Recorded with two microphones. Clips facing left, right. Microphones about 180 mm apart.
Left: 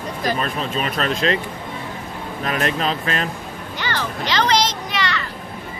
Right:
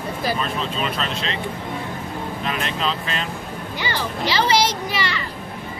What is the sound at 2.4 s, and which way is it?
Speech, 45° left (ahead or behind).